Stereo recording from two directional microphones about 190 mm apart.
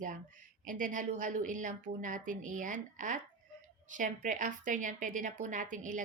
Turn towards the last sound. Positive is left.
turn(degrees=-45)  # may be behind; listen again after turning